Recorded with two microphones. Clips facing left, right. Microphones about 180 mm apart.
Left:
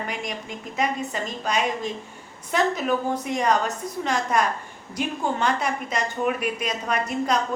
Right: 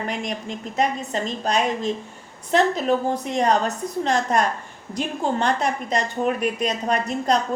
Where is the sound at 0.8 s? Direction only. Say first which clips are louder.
Right 3 dB; 35° right (ahead or behind).